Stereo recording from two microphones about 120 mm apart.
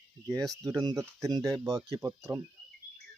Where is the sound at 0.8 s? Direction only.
30° right (ahead or behind).